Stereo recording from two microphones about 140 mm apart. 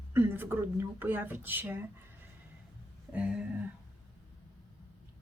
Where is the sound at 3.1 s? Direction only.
10° right (ahead or behind).